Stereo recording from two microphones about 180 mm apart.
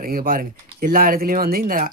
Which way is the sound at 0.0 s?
55° right (ahead or behind).